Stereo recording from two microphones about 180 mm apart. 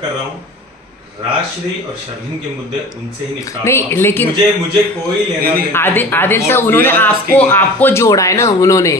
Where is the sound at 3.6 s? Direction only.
15° left (ahead or behind).